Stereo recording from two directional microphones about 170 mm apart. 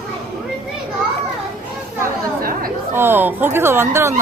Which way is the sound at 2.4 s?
60° right (ahead or behind).